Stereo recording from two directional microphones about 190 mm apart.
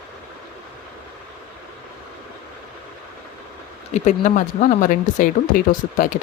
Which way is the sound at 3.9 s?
40° left (ahead or behind).